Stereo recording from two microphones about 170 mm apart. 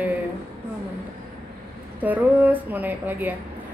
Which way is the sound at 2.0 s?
10° right (ahead or behind).